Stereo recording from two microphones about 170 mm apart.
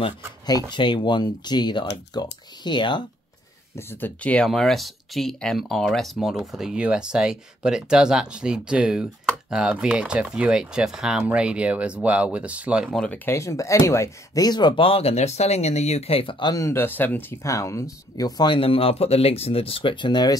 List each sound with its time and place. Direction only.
0.5 s speech: 25° left (ahead or behind)
3.7 s speech: 10° left (ahead or behind)